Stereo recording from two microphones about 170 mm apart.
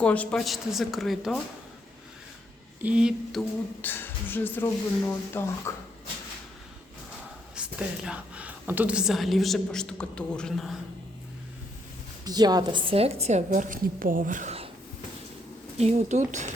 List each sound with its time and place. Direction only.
0.0 s a woman's voice: 10° left (ahead or behind)
2.8 s a woman's voice: 5° right (ahead or behind)
3.8 s speech: 10° left (ahead or behind)
7.5 s a woman's voice: 5° right (ahead or behind)
12.2 s a woman's voice: 25° right (ahead or behind); by 14.5 s 50° right (ahead or behind)
15.8 s speech: 40° right (ahead or behind)